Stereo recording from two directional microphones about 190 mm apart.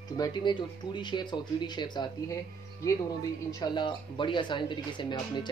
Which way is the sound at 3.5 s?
25° left (ahead or behind).